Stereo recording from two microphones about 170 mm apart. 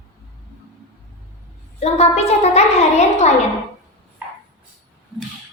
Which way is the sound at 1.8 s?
40° left (ahead or behind).